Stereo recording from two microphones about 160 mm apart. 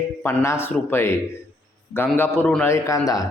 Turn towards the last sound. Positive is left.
turn(degrees=20)  # may be behind; listen again after turning